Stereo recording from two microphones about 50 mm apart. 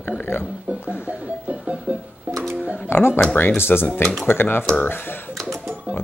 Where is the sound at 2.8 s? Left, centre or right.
Left.